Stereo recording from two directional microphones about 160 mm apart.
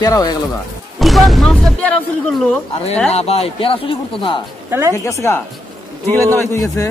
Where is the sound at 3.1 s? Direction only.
40° left (ahead or behind).